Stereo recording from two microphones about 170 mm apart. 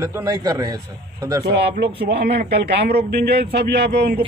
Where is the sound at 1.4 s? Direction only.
75° right (ahead or behind).